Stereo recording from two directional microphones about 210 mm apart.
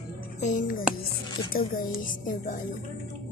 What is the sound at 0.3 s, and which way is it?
Speech, 35° left (ahead or behind).